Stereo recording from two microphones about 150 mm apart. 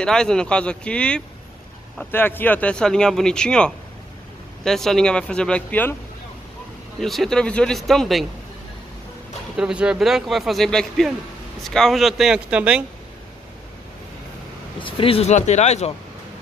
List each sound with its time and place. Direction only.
0.0 s speech: 5° left (ahead or behind)
7.0 s speech: centre (ahead or behind)
9.6 s speech: 5° right (ahead or behind)
14.8 s speech: 35° left (ahead or behind)